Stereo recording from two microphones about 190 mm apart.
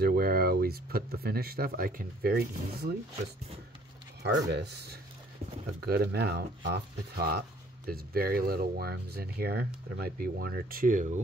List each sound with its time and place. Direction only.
0.0 s speech: 55° right (ahead or behind)
4.2 s speech: 60° right (ahead or behind); by 11.2 s 40° right (ahead or behind)